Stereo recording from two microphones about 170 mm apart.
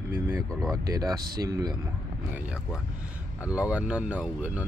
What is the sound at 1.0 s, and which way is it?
Speech, 20° right (ahead or behind).